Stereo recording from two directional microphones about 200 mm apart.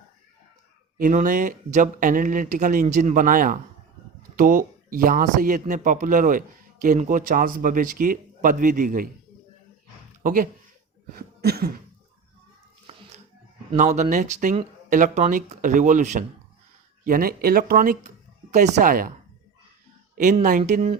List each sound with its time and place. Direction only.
0.9 s speech: 40° right (ahead or behind)
10.2 s speech: 45° right (ahead or behind)
11.1 s cough: 50° right (ahead or behind)
13.7 s speech: 35° right (ahead or behind)
20.1 s speech: 40° right (ahead or behind)